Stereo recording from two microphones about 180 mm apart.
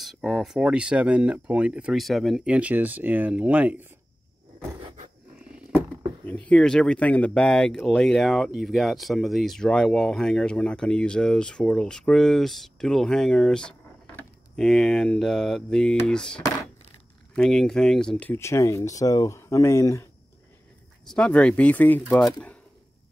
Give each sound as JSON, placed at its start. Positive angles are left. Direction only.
{"t": 0.0, "sound": "speech", "side_deg": 0}
{"t": 5.5, "sound": "wild animals", "side_deg": -10}
{"t": 6.2, "sound": "speech", "side_deg": 5}
{"t": 21.1, "sound": "speech", "side_deg": 5}